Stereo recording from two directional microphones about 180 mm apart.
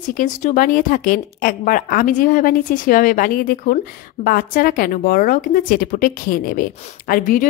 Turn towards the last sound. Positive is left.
turn(degrees=50)  # may be behind; listen again after turning